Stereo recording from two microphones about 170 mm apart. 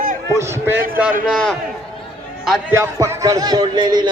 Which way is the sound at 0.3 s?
10° right (ahead or behind).